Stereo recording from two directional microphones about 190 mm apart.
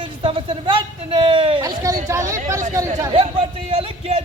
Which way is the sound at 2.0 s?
15° right (ahead or behind).